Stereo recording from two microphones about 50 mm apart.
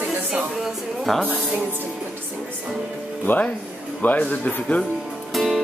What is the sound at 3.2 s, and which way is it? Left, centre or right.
Speech, left.